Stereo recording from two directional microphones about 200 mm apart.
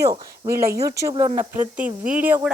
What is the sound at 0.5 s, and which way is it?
Speech, 50° right (ahead or behind).